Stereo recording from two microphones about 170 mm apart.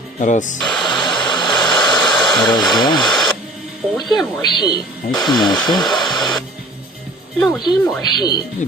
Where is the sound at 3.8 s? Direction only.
5° right (ahead or behind).